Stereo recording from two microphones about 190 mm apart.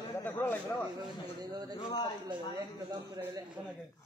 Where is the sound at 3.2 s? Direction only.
20° right (ahead or behind).